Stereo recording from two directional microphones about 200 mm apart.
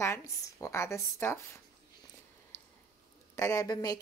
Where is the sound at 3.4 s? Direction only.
15° left (ahead or behind).